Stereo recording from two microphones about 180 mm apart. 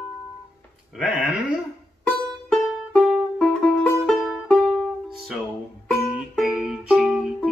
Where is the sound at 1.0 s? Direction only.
5° right (ahead or behind).